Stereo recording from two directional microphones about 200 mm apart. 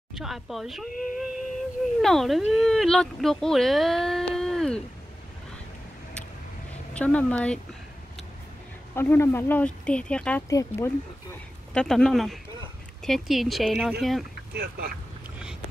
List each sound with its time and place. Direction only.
0.1 s speech: centre (ahead or behind)
6.9 s speech: 5° left (ahead or behind)
8.9 s speech: 10° left (ahead or behind)
10.5 s speech: 15° left (ahead or behind)
11.7 s speech: 5° left (ahead or behind)
14.5 s speech: 55° right (ahead or behind)